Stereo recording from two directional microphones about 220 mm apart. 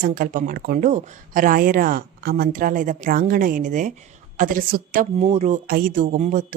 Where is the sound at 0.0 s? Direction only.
40° right (ahead or behind).